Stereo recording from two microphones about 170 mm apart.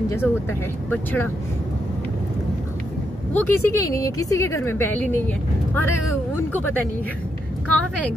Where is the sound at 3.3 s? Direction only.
10° left (ahead or behind).